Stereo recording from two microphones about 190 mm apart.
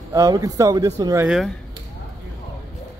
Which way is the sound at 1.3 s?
Centre (ahead or behind).